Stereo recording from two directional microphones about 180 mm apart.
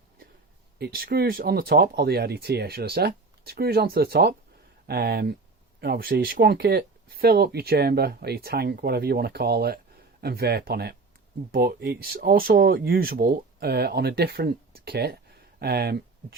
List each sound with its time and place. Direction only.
0.8 s speech: 60° right (ahead or behind)